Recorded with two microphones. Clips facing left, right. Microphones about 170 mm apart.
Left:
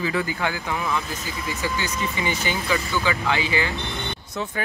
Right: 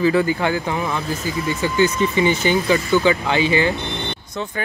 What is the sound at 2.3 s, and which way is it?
Speech, 25° right (ahead or behind).